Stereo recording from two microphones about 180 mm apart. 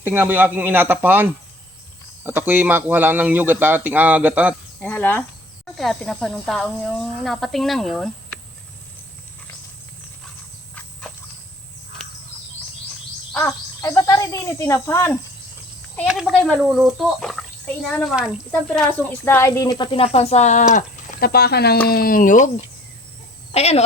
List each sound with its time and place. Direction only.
0.0 s speech: 10° right (ahead or behind)
4.8 s speech: 10° left (ahead or behind)
13.3 s speech: 15° left (ahead or behind)
16.0 s a woman's voice: 5° right (ahead or behind); by 21.2 s 45° left (ahead or behind)
21.2 s speech: 60° left (ahead or behind)
23.6 s speech: 35° left (ahead or behind)